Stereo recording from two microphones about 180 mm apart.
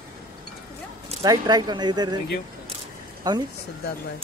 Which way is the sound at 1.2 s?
20° right (ahead or behind).